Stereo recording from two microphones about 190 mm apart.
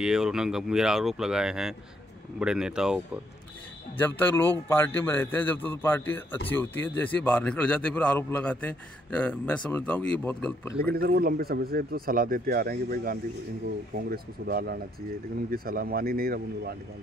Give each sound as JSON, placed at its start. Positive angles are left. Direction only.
{"t": 0.0, "sound": "speech", "side_deg": -5}
{"t": 4.0, "sound": "a man's voice", "side_deg": 10}
{"t": 10.9, "sound": "speech", "side_deg": -55}